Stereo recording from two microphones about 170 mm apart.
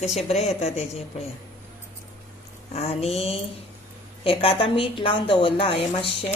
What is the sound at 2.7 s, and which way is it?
A woman's voice, 35° left (ahead or behind).